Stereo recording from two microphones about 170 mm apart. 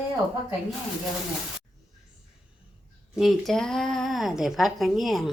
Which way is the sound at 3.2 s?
Centre (ahead or behind).